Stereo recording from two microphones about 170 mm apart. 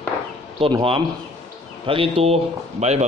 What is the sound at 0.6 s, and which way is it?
A man's voice, 30° right (ahead or behind).